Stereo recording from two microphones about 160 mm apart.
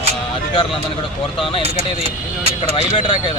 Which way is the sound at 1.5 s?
35° left (ahead or behind).